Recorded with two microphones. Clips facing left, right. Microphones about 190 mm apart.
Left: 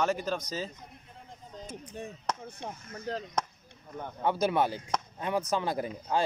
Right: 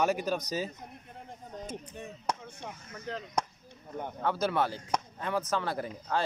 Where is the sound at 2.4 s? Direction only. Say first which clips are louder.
Left 3 dB; 35° left (ahead or behind).